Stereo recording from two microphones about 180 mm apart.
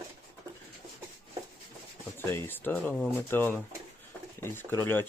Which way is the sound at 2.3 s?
10° left (ahead or behind).